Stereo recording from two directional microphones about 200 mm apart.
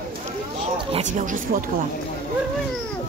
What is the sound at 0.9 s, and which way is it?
Speech, 40° right (ahead or behind).